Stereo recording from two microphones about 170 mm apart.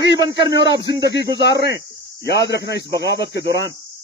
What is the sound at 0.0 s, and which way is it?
Speech, 90° left.